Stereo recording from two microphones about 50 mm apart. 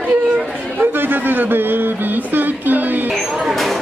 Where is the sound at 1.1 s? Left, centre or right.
Right.